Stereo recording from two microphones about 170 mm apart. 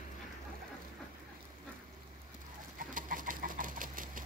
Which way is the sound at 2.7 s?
55° right (ahead or behind).